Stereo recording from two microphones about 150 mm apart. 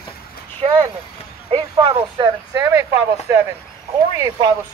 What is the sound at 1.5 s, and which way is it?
Speech, 35° right (ahead or behind).